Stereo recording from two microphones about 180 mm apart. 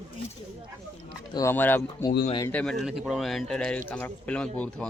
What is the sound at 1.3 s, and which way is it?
Speech, 15° left (ahead or behind).